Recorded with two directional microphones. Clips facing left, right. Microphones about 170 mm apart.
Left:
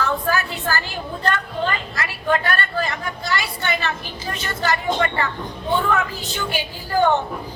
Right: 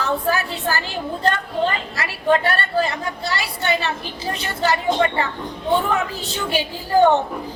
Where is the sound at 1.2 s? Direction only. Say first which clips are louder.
Right 2 dB; 25° right (ahead or behind).